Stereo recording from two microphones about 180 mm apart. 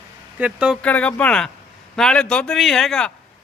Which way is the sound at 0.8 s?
5° left (ahead or behind).